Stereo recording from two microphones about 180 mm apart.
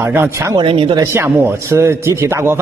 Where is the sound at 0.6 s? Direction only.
30° right (ahead or behind).